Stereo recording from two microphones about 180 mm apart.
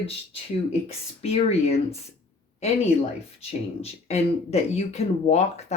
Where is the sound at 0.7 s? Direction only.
35° left (ahead or behind).